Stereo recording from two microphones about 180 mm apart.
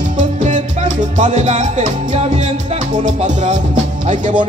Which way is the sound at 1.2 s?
40° right (ahead or behind).